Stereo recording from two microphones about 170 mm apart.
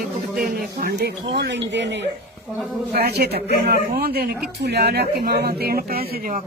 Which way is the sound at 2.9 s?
70° right (ahead or behind).